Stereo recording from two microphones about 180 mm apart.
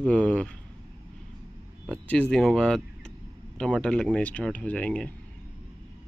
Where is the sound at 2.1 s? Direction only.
5° left (ahead or behind).